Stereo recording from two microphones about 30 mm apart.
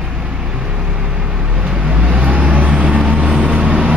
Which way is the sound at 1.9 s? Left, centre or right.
Right.